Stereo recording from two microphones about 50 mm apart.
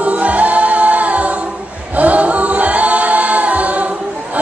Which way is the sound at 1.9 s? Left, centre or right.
Right.